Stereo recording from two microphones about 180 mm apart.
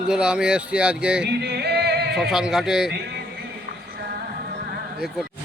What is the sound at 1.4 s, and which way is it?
Yodeling, 65° right (ahead or behind).